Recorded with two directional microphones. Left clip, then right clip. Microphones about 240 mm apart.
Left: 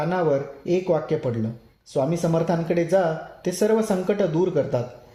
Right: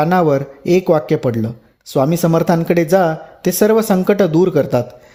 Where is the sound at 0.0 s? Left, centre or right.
Right.